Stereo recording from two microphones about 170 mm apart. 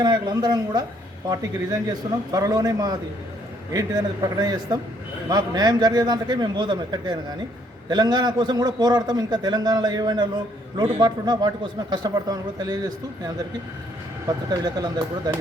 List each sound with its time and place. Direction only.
0.0 s a man's voice: 25° right (ahead or behind)
2.0 s a man's voice: 20° right (ahead or behind)
14.3 s a man's voice: 25° right (ahead or behind)